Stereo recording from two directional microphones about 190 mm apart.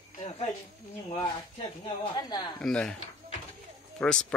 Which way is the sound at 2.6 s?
5° left (ahead or behind).